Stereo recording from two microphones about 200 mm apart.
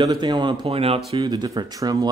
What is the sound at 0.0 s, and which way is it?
Speech, 20° right (ahead or behind).